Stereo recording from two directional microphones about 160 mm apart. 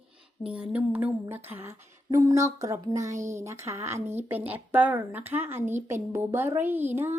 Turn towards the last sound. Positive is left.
turn(degrees=-15)  # may be behind; listen again after turning